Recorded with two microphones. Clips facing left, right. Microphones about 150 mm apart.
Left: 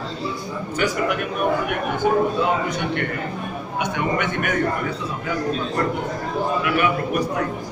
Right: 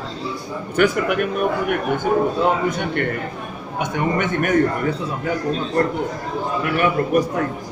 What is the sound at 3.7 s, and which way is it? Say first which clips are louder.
Speech: right 2 dB; 45° right (ahead or behind).